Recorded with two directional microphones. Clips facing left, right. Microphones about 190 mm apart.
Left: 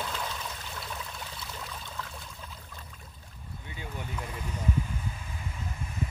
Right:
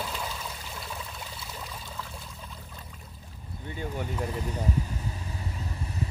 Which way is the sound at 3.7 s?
45° right (ahead or behind).